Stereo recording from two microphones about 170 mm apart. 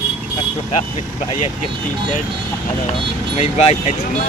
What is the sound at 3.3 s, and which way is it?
Speech, 40° left (ahead or behind).